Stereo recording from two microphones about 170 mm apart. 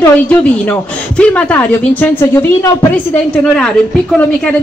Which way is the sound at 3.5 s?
5° left (ahead or behind).